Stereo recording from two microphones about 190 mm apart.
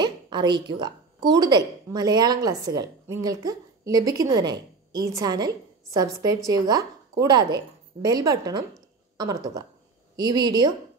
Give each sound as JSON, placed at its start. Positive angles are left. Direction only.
{"t": 0.0, "sound": "a woman's voice", "side_deg": -25}